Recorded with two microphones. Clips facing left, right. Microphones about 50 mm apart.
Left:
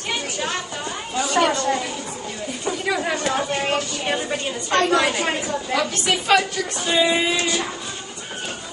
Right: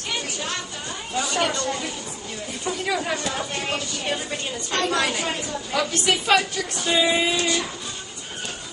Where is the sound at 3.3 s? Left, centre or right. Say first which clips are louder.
Left 5 dB; left.